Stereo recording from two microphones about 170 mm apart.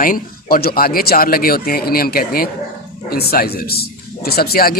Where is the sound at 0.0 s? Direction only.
55° left (ahead or behind).